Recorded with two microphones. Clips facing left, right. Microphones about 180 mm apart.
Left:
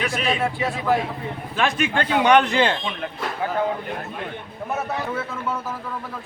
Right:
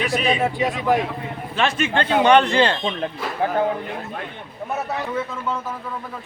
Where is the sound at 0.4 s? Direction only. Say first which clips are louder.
Right 2 dB; 20° right (ahead or behind).